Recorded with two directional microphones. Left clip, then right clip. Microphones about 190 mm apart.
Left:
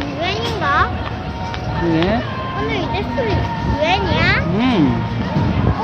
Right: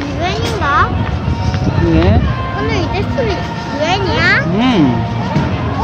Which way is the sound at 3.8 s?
30° right (ahead or behind).